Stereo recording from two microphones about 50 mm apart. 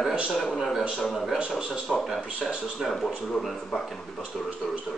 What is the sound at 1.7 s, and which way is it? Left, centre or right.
Speech, centre.